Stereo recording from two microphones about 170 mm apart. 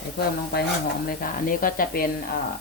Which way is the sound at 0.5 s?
70° left (ahead or behind).